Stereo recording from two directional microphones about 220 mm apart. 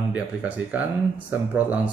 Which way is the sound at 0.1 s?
5° right (ahead or behind).